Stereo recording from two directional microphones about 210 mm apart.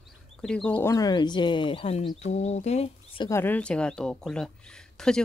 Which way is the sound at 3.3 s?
10° left (ahead or behind).